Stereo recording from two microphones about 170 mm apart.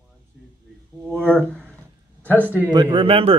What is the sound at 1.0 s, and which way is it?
Speech, 5° left (ahead or behind).